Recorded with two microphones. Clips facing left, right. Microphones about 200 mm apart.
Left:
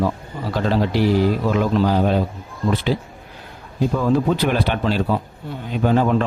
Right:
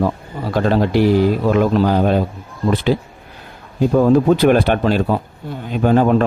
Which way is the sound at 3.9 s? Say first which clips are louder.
Right 7 dB; 45° right (ahead or behind).